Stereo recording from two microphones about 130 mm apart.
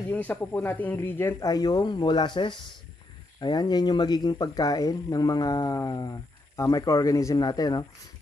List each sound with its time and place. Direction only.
0.1 s speech: 15° left (ahead or behind)
1.5 s speech: 30° left (ahead or behind)